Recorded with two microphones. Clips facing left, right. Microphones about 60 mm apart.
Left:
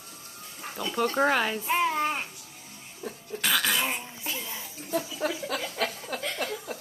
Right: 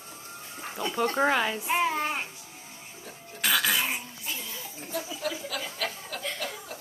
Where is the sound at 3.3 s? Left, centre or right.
Centre.